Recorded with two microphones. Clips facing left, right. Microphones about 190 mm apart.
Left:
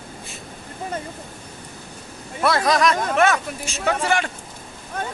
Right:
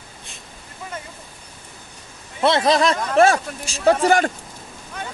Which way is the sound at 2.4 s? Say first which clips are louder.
Right 2 dB; 25° right (ahead or behind).